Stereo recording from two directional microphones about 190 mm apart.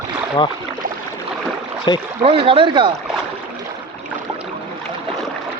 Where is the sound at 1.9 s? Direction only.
25° left (ahead or behind).